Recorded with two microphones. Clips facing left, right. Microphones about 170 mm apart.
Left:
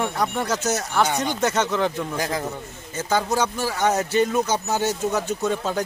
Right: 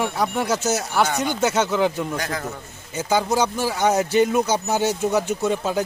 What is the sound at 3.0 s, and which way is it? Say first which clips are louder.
Speech: right 2 dB; 10° right (ahead or behind).